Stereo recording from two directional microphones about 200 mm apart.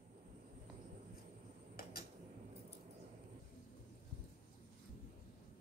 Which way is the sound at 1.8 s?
50° left (ahead or behind).